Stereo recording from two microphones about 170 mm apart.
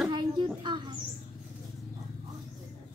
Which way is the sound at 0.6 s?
25° right (ahead or behind).